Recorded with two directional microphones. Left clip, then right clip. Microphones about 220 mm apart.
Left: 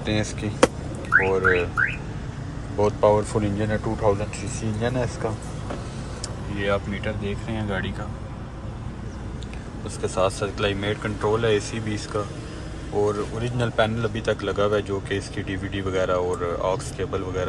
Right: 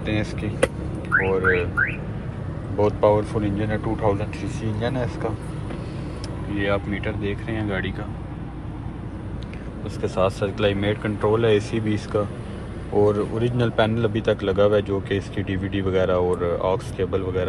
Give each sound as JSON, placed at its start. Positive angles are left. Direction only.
{"t": 0.0, "sound": "speech", "side_deg": 20}
{"t": 2.8, "sound": "speech", "side_deg": 15}
{"t": 6.5, "sound": "speech", "side_deg": 10}
{"t": 10.0, "sound": "speech", "side_deg": 10}